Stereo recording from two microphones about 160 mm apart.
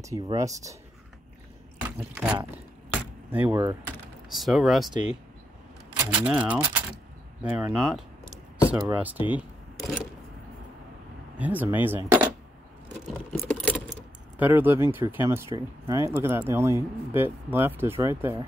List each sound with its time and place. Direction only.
0.0 s speech: 20° right (ahead or behind)
1.9 s speech: 10° right (ahead or behind)
2.9 s keys jangling: 10° right (ahead or behind)
4.3 s speech: centre (ahead or behind)
9.8 s a sound: centre (ahead or behind)
11.3 s speech: 10° right (ahead or behind)
13.3 s keys jangling: 5° left (ahead or behind)
14.4 s speech: 10° right (ahead or behind)